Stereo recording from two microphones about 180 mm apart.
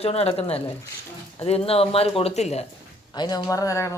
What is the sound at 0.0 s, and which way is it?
Speech, 35° left (ahead or behind).